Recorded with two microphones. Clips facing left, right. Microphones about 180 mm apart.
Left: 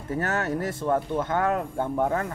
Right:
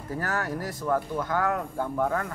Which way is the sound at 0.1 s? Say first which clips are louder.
Left 4 dB; 25° left (ahead or behind).